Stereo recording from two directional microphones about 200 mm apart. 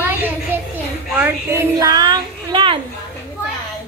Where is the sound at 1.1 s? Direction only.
10° right (ahead or behind).